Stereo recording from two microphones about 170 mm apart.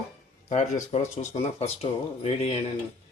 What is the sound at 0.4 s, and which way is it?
Speech, 40° left (ahead or behind).